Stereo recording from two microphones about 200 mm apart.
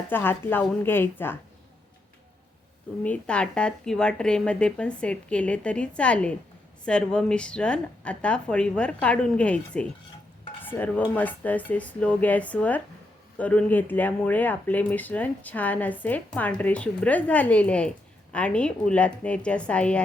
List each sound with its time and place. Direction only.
0.1 s speech: 10° left (ahead or behind)
3.0 s speech: 5° left (ahead or behind)
10.6 s dishes: 10° left (ahead or behind)
11.1 s speech: 10° left (ahead or behind)